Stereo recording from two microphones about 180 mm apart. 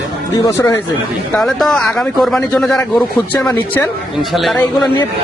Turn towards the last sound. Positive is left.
turn(degrees=0)  # may be behind; listen again after turning